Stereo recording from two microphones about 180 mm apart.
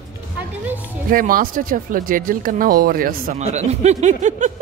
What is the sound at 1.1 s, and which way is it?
Speech, 50° right (ahead or behind).